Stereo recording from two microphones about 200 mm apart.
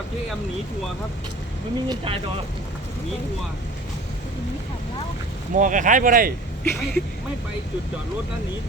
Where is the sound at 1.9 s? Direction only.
25° right (ahead or behind).